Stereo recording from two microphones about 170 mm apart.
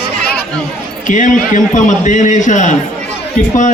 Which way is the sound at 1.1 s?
50° left (ahead or behind).